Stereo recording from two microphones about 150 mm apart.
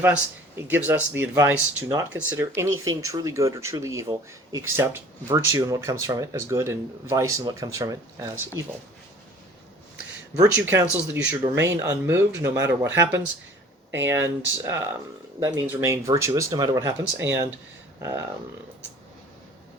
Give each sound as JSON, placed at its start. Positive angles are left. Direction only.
{"t": 0.0, "sound": "speech", "side_deg": -15}
{"t": 10.5, "sound": "speech", "side_deg": -15}